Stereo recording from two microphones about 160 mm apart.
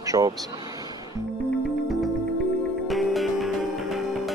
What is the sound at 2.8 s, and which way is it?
Music, centre (ahead or behind).